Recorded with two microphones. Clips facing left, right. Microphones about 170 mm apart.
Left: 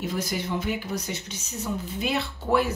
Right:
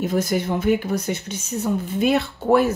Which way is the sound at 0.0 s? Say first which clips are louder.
Right 8 dB; 50° right (ahead or behind).